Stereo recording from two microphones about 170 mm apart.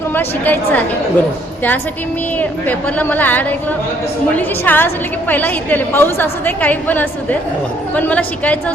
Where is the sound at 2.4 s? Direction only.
10° left (ahead or behind).